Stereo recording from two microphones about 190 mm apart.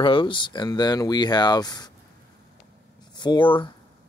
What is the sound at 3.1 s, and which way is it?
Speech, 25° left (ahead or behind).